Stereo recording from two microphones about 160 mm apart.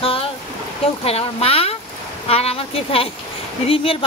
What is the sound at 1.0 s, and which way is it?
Speech, 40° left (ahead or behind).